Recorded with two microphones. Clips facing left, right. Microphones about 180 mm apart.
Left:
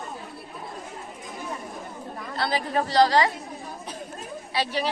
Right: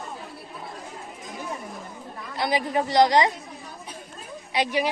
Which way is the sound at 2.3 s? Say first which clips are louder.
Right 2 dB; 15° right (ahead or behind).